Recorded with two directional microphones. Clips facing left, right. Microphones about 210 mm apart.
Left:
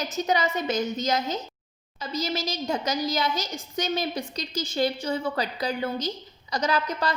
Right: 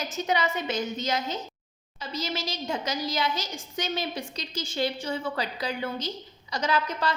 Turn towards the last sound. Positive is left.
turn(degrees=40)  # may be behind; listen again after turning